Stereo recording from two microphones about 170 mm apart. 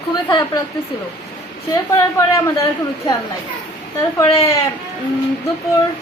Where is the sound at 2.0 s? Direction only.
20° left (ahead or behind).